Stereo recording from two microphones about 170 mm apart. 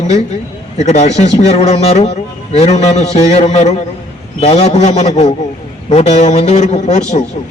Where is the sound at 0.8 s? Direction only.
40° left (ahead or behind).